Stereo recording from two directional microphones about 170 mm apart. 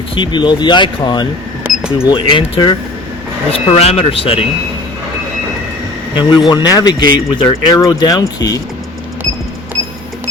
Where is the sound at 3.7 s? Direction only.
40° left (ahead or behind).